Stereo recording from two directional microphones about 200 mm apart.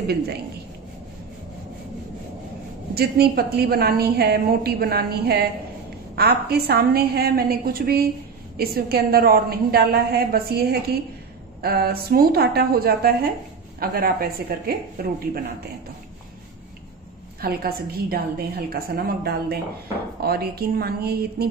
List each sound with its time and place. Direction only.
2.9 s a woman's voice: 50° right (ahead or behind)
17.4 s a woman's voice: 50° right (ahead or behind)